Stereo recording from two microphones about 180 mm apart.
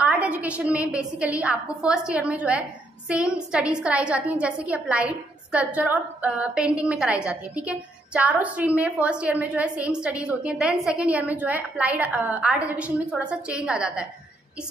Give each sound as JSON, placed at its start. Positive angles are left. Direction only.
{"t": 0.0, "sound": "a woman's voice", "side_deg": -5}